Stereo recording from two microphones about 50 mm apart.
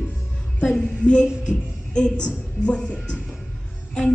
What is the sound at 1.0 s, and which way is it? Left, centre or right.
A woman's voice, centre.